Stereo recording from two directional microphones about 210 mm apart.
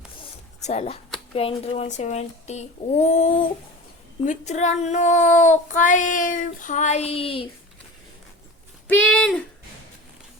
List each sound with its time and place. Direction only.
0.6 s child singing: 30° left (ahead or behind)
1.3 s speech: 25° left (ahead or behind)
4.3 s child singing: 35° left (ahead or behind)
8.9 s speech: 5° left (ahead or behind)